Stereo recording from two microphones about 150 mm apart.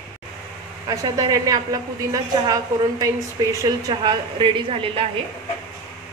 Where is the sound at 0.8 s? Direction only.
25° right (ahead or behind).